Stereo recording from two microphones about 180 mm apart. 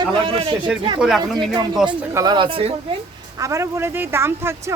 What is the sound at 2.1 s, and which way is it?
Speech, 20° right (ahead or behind).